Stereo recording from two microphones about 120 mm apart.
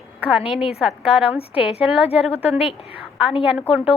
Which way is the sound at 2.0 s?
55° left (ahead or behind).